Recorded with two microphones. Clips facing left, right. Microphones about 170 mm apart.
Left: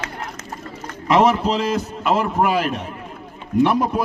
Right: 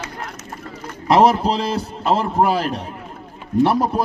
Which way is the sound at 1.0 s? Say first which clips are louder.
Right 2 dB; 35° right (ahead or behind).